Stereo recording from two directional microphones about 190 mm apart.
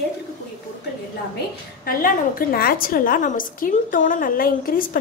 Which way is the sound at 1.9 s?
50° left (ahead or behind).